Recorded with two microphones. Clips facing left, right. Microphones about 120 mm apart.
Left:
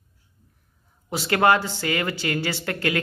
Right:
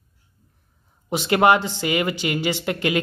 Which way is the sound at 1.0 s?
20° right (ahead or behind).